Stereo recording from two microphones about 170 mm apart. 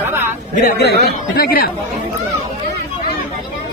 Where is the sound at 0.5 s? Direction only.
65° left (ahead or behind).